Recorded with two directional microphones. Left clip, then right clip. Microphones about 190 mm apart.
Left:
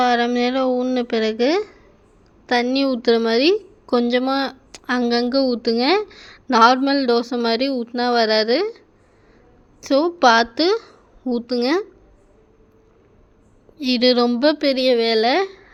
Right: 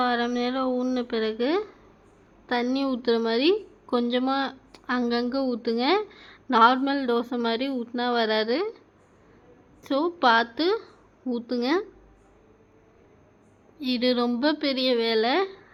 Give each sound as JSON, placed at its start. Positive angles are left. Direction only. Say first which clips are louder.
{"t": 0.0, "sound": "a woman's voice", "louder": "left 7 dB", "side_deg": 30}
{"t": 9.8, "sound": "a woman's voice", "louder": "left 7 dB", "side_deg": 35}
{"t": 13.7, "sound": "a woman's voice", "louder": "left 8 dB", "side_deg": 35}